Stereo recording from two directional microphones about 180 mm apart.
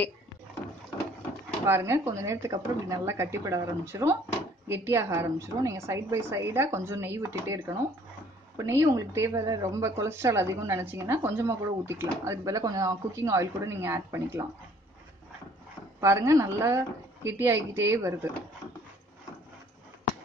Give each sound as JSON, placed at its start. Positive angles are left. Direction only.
{"t": 1.7, "sound": "a woman's voice", "side_deg": -15}
{"t": 16.0, "sound": "a woman's voice", "side_deg": -15}